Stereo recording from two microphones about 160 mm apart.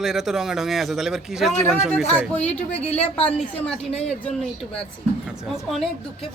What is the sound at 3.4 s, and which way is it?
Speech, 5° left (ahead or behind).